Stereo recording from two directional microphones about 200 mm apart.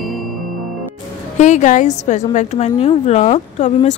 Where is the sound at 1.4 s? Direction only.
35° left (ahead or behind).